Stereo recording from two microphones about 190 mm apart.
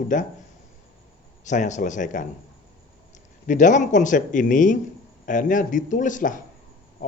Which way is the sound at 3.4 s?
40° left (ahead or behind).